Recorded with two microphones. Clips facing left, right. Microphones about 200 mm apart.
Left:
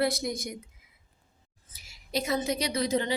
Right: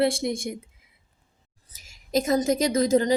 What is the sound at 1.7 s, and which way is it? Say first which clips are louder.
A woman's voice: right 7 dB; 45° right (ahead or behind).